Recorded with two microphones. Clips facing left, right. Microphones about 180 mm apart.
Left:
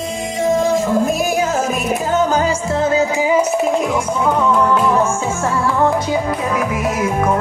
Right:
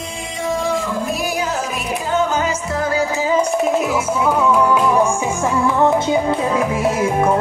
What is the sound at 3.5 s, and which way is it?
Music, centre (ahead or behind).